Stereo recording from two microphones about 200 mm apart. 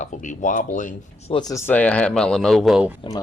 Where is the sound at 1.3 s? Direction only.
20° left (ahead or behind); by 2.9 s 5° right (ahead or behind).